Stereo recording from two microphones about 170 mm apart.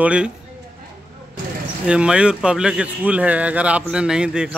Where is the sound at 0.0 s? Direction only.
5° right (ahead or behind).